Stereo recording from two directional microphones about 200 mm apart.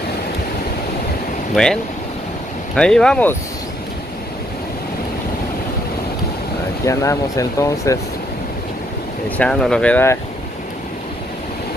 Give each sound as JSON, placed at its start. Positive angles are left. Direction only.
{"t": 1.5, "sound": "speech", "side_deg": 5}
{"t": 6.9, "sound": "speech", "side_deg": 15}
{"t": 9.4, "sound": "speech", "side_deg": 5}